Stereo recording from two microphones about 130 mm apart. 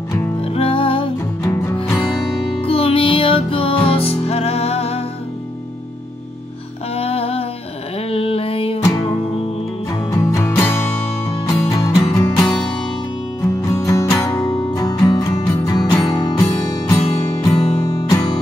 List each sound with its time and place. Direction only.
0.4 s music: 45° left (ahead or behind)
2.6 s music: 45° left (ahead or behind)
7.0 s music: 50° left (ahead or behind)
8.1 s a sound: 45° left (ahead or behind)
8.8 s music: 30° left (ahead or behind)
10.1 s music: 20° left (ahead or behind)